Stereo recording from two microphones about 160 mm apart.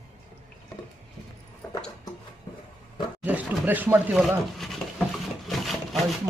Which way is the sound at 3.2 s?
10° right (ahead or behind).